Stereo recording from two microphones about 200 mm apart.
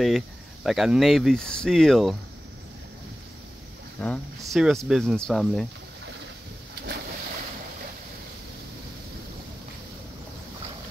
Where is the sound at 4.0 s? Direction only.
5° left (ahead or behind).